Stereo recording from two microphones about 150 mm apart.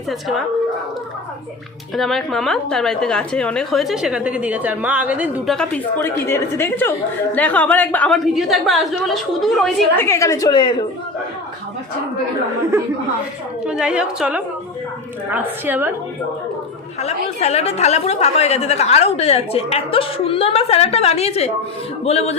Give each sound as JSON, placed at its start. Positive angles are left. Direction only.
{"t": 0.1, "sound": "a woman's voice", "side_deg": 0}
{"t": 2.0, "sound": "a woman's voice", "side_deg": 0}
{"t": 5.5, "sound": "a woman's voice", "side_deg": 5}
{"t": 10.0, "sound": "a woman's voice", "side_deg": 20}
{"t": 13.7, "sound": "a woman's voice", "side_deg": -5}
{"t": 17.0, "sound": "a woman's voice", "side_deg": 45}